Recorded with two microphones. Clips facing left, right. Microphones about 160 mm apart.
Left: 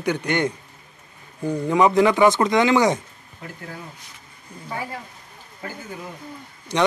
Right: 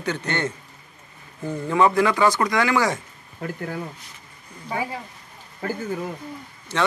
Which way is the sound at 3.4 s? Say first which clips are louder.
Right 7 dB; 60° right (ahead or behind).